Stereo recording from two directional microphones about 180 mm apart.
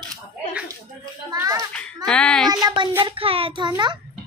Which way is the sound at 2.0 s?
5° left (ahead or behind).